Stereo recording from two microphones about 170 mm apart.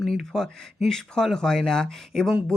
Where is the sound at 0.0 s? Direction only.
Centre (ahead or behind).